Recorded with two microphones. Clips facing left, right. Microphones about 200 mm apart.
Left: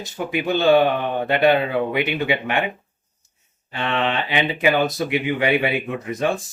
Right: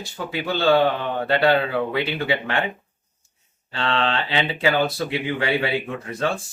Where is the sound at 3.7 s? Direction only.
15° left (ahead or behind).